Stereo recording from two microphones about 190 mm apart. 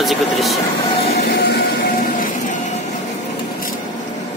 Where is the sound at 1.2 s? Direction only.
55° left (ahead or behind).